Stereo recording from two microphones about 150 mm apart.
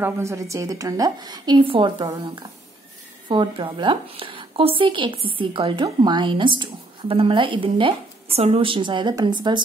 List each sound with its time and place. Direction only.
0.0 s a woman's voice: 20° right (ahead or behind)